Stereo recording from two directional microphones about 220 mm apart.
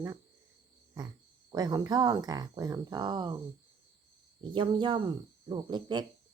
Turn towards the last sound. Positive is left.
turn(degrees=-20)  # may be behind; listen again after turning